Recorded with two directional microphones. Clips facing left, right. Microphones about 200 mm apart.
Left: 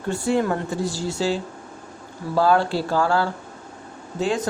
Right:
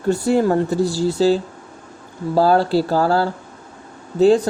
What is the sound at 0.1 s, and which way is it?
Speech, 35° right (ahead or behind).